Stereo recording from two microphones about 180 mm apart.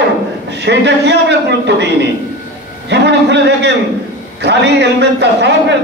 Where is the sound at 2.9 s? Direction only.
75° right (ahead or behind).